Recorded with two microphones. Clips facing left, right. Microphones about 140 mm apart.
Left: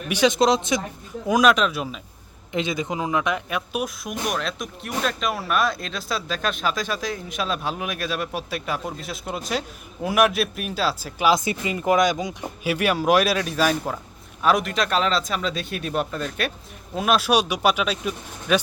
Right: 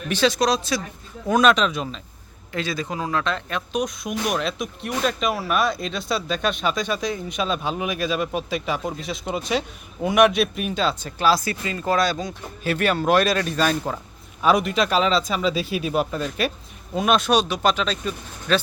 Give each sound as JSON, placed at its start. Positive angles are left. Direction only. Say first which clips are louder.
{"t": 0.1, "sound": "speech", "louder": "left 2 dB", "side_deg": 15}
{"t": 1.3, "sound": "speech", "louder": "even", "side_deg": 5}
{"t": 2.5, "sound": "speech", "louder": "left 2 dB", "side_deg": 20}
{"t": 11.3, "sound": "speech", "louder": "even", "side_deg": 20}